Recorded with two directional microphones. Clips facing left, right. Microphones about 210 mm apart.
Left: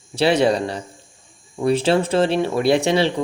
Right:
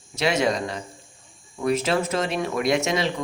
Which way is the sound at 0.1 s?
30° left (ahead or behind).